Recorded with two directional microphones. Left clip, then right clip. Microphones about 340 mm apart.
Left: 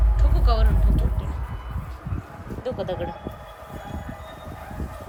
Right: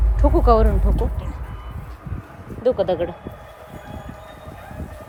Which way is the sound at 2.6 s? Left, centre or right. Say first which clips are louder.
Right 10 dB; right.